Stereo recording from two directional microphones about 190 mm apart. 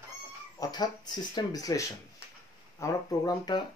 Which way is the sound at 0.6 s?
20° left (ahead or behind).